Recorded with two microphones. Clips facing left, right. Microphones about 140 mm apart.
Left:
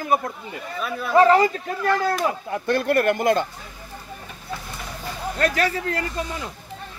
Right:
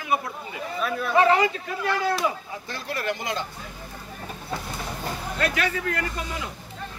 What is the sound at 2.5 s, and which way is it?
Speech, 60° left (ahead or behind).